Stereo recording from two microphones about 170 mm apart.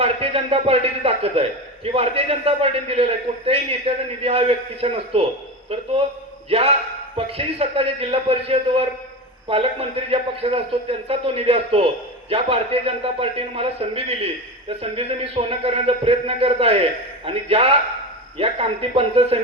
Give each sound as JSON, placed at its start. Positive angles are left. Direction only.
{"t": 0.0, "sound": "a man's voice", "side_deg": -35}